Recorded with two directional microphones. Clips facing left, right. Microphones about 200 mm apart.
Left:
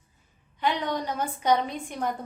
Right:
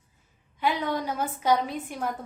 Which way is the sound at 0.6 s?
5° right (ahead or behind).